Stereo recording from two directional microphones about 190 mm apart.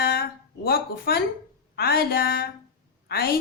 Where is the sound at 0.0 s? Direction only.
55° left (ahead or behind).